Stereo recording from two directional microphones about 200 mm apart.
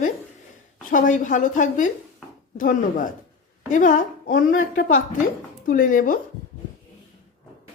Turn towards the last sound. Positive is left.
turn(degrees=40)  # may be behind; listen again after turning